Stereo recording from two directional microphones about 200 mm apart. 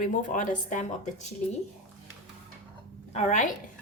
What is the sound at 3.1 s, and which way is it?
Speech, 35° left (ahead or behind).